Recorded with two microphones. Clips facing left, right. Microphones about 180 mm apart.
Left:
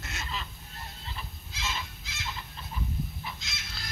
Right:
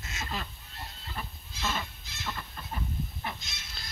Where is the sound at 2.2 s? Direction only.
60° right (ahead or behind).